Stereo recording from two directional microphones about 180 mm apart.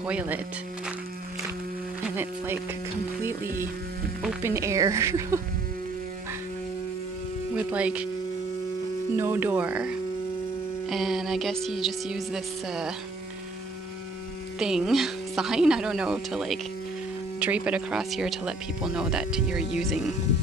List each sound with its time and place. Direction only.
0.0 s a woman's voice: 10° right (ahead or behind)
2.0 s speech: 10° right (ahead or behind)
4.4 s a woman's voice: 15° right (ahead or behind)
7.5 s a woman's voice: 5° right (ahead or behind)
9.1 s a woman's voice: 15° right (ahead or behind)
14.6 s speech: 5° right (ahead or behind)